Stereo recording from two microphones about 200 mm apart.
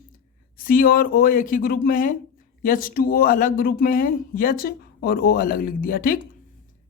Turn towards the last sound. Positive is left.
turn(degrees=45)  # may be behind; listen again after turning